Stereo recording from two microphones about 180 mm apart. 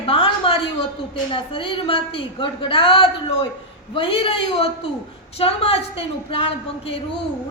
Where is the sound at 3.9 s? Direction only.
30° left (ahead or behind).